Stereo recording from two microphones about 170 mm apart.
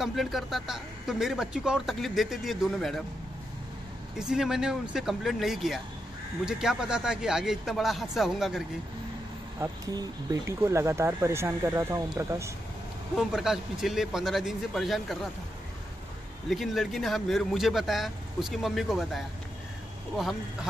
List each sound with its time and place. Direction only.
0.0 s speech: centre (ahead or behind)
4.2 s speech: 5° right (ahead or behind)
9.6 s speech: 15° right (ahead or behind)
13.1 s speech: centre (ahead or behind)
16.4 s speech: centre (ahead or behind)